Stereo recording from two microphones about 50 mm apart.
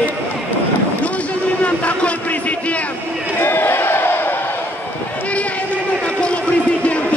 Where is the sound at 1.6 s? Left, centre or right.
Left.